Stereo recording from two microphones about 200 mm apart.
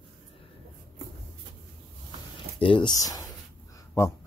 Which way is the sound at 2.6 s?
25° left (ahead or behind).